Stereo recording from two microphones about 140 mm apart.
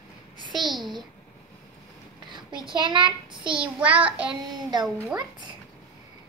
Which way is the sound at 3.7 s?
10° right (ahead or behind).